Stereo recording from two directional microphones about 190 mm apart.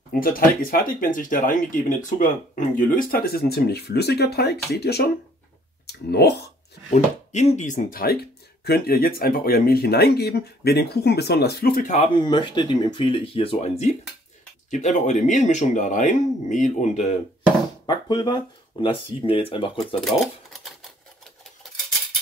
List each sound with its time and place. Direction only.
0.1 s speech: 50° left (ahead or behind)
6.9 s speech: 40° left (ahead or behind)
12.2 s speech: 25° left (ahead or behind)
17.8 s speech: 25° left (ahead or behind)